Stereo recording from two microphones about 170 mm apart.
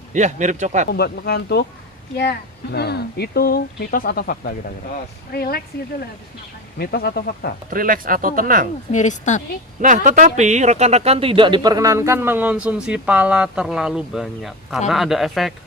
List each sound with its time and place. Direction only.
0.1 s speech: 45° right (ahead or behind)
0.9 s speech: 70° left (ahead or behind)
6.7 s speech: 65° left (ahead or behind)
7.7 s speech: 55° right (ahead or behind)
8.9 s speech: 45° left (ahead or behind)
9.8 s speech: 50° right (ahead or behind); by 15.5 s centre (ahead or behind)